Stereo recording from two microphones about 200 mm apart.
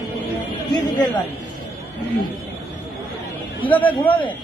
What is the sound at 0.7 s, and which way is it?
Speech, 20° left (ahead or behind).